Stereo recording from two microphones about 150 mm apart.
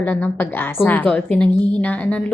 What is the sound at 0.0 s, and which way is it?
A woman's voice, 10° left (ahead or behind).